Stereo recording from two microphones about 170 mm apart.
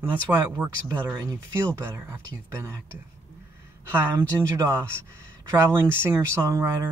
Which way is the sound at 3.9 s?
15° right (ahead or behind).